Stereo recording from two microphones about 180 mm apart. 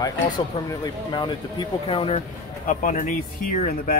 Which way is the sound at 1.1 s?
25° left (ahead or behind).